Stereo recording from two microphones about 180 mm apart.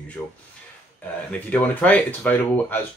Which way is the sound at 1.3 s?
10° left (ahead or behind).